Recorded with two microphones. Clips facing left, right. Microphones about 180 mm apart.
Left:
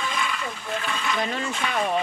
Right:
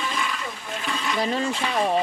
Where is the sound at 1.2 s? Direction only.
35° right (ahead or behind).